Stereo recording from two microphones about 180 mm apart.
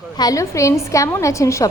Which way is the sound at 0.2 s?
20° left (ahead or behind).